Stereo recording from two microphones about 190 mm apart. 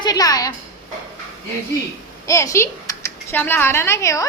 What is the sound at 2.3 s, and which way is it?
A woman's voice, 15° left (ahead or behind).